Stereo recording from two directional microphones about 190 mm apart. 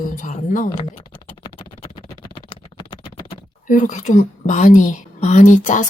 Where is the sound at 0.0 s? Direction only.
45° left (ahead or behind).